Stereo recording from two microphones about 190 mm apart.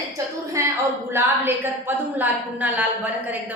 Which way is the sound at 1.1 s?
10° right (ahead or behind).